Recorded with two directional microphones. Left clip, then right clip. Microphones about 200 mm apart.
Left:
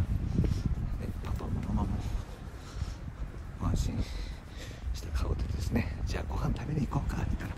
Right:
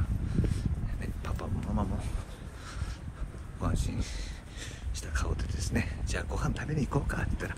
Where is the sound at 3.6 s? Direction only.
30° left (ahead or behind).